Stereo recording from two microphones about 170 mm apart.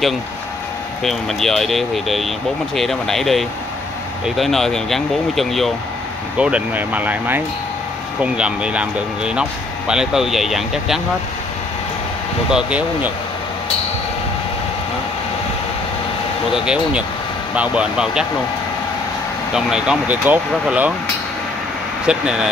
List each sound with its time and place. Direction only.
1.0 s speech: centre (ahead or behind)
12.4 s speech: 5° right (ahead or behind)
16.5 s speech: 5° right (ahead or behind)
19.5 s speech: 5° right (ahead or behind)
22.0 s speech: 5° right (ahead or behind)